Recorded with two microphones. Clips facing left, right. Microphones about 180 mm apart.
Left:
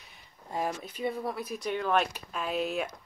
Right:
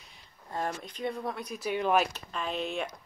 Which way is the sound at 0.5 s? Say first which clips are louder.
Left 1 dB; 10° left (ahead or behind).